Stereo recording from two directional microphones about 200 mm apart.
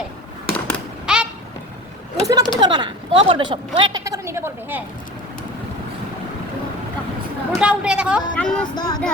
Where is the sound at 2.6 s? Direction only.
20° right (ahead or behind).